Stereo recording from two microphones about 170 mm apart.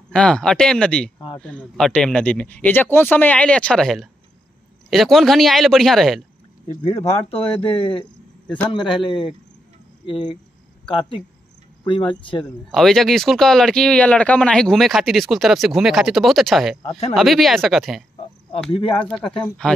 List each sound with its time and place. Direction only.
0.1 s speech: 5° left (ahead or behind)
6.7 s speech: 25° left (ahead or behind)
8.5 s speech: 5° left (ahead or behind)
8.7 s speech: 30° left (ahead or behind)
12.7 s speech: centre (ahead or behind)
19.0 s speech: 5° left (ahead or behind)